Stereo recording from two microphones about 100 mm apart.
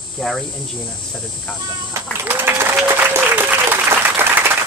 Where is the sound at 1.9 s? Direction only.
20° right (ahead or behind).